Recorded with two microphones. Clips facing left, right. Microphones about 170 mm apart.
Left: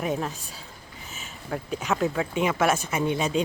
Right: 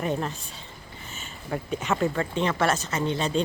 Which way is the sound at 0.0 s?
5° left (ahead or behind).